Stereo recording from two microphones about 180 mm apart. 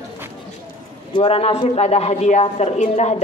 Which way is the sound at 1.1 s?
35° left (ahead or behind).